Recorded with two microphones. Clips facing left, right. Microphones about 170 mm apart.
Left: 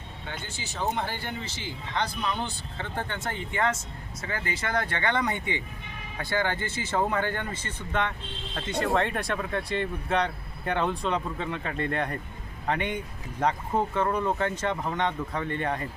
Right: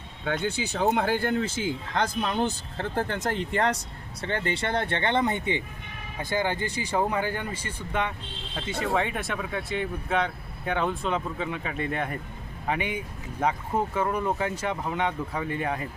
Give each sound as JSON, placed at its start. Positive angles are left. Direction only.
{"t": 0.6, "sound": "speech", "side_deg": -60}